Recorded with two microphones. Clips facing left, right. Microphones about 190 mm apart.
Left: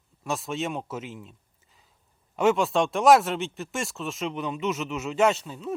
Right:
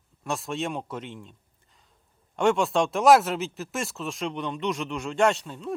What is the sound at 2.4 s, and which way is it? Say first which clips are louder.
Speech: even; centre (ahead or behind).